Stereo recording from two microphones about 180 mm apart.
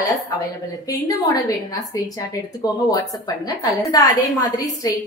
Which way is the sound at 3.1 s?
20° left (ahead or behind).